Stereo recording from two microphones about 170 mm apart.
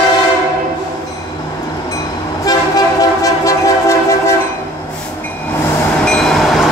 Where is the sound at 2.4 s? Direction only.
20° left (ahead or behind).